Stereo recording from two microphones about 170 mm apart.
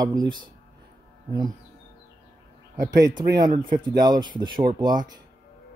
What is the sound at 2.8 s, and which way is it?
Speech, 20° right (ahead or behind).